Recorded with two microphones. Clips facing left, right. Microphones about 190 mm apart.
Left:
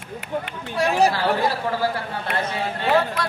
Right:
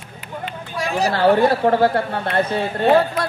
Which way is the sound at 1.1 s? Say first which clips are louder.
Right 7 dB; 60° right (ahead or behind).